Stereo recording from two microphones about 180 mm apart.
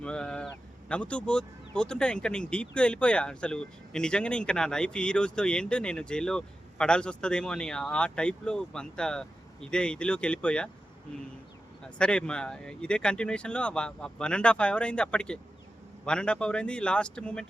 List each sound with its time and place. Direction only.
0.0 s a sound: 5° left (ahead or behind)
0.9 s speech: 5° left (ahead or behind)
11.9 s speech: 5° left (ahead or behind)